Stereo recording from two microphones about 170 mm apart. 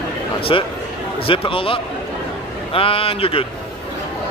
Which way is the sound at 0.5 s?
30° left (ahead or behind).